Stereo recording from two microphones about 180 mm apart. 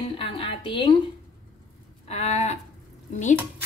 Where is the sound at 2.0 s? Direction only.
40° left (ahead or behind).